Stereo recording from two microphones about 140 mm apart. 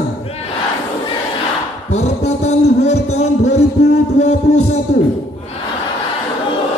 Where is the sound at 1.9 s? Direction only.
55° left (ahead or behind).